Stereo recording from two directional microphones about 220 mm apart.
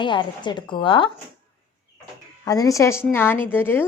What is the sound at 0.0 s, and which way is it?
A woman's voice, 20° left (ahead or behind).